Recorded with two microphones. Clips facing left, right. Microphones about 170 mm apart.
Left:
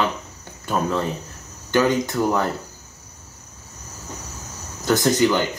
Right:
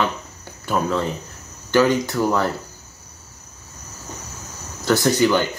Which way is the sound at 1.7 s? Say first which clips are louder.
Right 2 dB; 20° left (ahead or behind).